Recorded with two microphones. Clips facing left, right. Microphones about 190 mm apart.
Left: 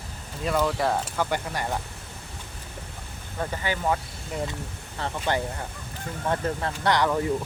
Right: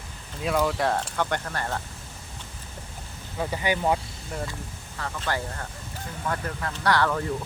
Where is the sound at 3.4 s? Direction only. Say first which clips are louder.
Right 2 dB; 15° right (ahead or behind).